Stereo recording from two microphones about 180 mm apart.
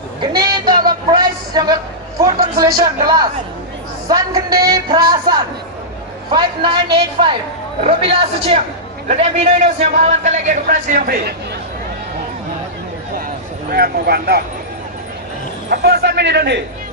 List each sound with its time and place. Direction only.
0.2 s a sound: 25° right (ahead or behind)
2.7 s a man's voice: 20° right (ahead or behind); by 11.3 s 50° right (ahead or behind)
13.7 s speech: 55° right (ahead or behind)
15.7 s a man's voice: 65° right (ahead or behind)